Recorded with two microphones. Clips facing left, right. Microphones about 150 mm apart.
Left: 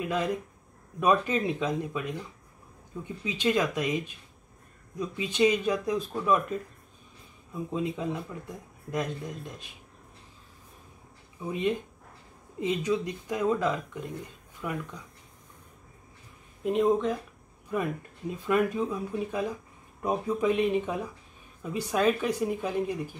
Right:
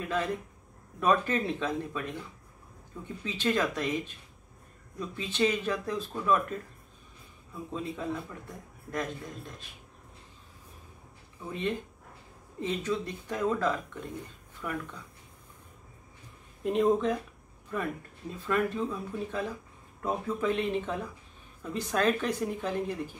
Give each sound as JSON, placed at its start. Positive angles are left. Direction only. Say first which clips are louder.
{"t": 0.0, "sound": "speech", "louder": "left 2 dB", "side_deg": 10}
{"t": 8.9, "sound": "speech", "louder": "left 3 dB", "side_deg": 15}
{"t": 11.4, "sound": "speech", "louder": "left 4 dB", "side_deg": 15}
{"t": 16.6, "sound": "speech", "louder": "left 1 dB", "side_deg": 0}
{"t": 17.7, "sound": "speech", "louder": "left 3 dB", "side_deg": 10}